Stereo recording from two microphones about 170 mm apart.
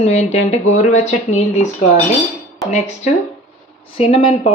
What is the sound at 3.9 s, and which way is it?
Speech, 30° left (ahead or behind).